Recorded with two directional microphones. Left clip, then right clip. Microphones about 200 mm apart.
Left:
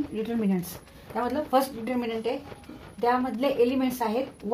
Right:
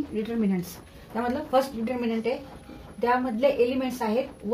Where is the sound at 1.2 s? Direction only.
45° left (ahead or behind).